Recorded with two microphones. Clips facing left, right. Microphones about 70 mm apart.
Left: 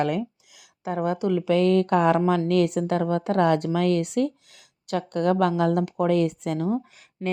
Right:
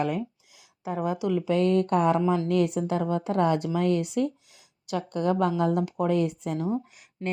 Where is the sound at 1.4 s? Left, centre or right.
Left.